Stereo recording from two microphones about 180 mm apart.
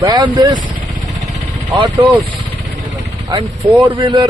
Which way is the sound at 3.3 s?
25° right (ahead or behind).